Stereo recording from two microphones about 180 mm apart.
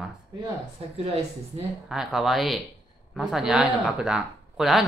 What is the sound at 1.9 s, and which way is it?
Speech, 5° right (ahead or behind).